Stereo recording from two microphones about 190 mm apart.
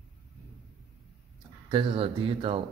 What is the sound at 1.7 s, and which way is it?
Speech, 30° right (ahead or behind).